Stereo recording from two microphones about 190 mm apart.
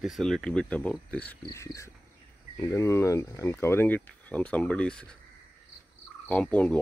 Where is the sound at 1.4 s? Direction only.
15° left (ahead or behind).